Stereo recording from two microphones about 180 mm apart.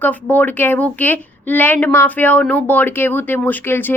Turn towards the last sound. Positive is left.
turn(degrees=10)  # may be behind; listen again after turning